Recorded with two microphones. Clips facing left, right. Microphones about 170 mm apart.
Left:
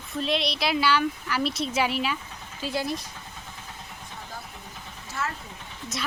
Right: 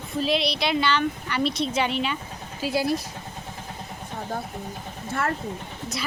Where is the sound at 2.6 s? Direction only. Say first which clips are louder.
Right 5 dB; 10° right (ahead or behind).